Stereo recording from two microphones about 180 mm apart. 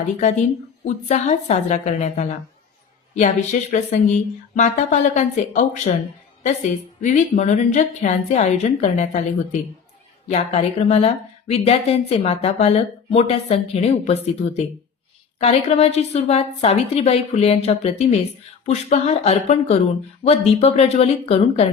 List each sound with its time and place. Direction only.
0.2 s speech: 45° left (ahead or behind)
15.4 s speech: 35° left (ahead or behind)